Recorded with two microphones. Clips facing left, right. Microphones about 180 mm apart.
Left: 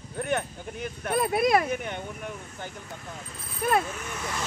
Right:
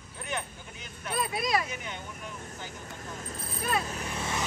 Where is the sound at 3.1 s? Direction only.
40° right (ahead or behind); by 4.4 s 25° right (ahead or behind).